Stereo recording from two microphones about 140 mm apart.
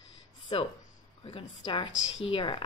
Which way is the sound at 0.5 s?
40° left (ahead or behind).